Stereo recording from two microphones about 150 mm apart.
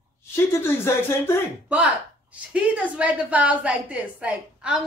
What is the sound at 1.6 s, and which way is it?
A woman's voice, 10° right (ahead or behind).